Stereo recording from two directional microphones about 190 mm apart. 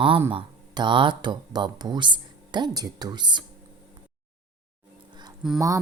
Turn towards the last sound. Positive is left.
turn(degrees=0)  # may be behind; listen again after turning